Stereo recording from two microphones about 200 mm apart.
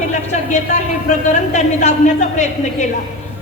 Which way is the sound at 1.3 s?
35° left (ahead or behind).